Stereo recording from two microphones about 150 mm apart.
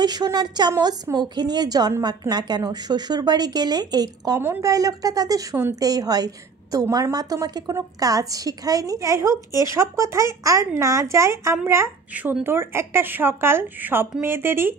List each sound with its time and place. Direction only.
0.0 s a woman's voice: 25° right (ahead or behind)